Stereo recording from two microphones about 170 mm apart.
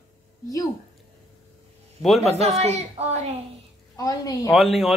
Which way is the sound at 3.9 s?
20° left (ahead or behind).